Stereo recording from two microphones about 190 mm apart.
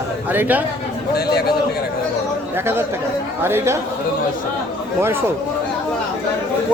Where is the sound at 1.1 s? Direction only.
55° left (ahead or behind).